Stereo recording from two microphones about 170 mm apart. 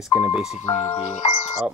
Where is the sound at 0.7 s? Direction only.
15° left (ahead or behind).